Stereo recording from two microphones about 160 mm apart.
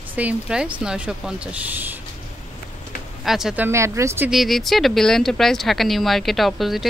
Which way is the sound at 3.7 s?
15° right (ahead or behind).